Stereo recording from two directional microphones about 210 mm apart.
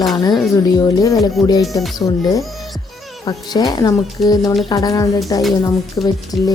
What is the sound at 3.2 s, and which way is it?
Speech, 20° left (ahead or behind).